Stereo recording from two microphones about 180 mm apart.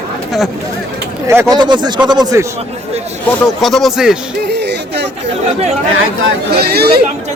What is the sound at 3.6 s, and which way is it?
Speech, centre (ahead or behind).